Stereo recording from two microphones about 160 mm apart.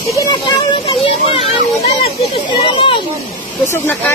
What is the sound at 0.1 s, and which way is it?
Speech, 25° left (ahead or behind).